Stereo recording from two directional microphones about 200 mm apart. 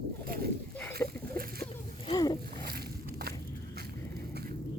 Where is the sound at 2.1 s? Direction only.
20° left (ahead or behind).